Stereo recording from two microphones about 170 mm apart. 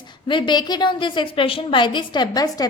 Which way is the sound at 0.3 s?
30° left (ahead or behind).